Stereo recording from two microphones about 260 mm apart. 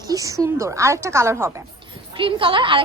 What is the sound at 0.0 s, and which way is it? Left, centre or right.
A woman's voice, centre.